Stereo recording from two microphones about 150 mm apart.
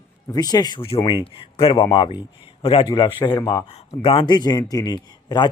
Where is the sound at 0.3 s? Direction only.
25° left (ahead or behind).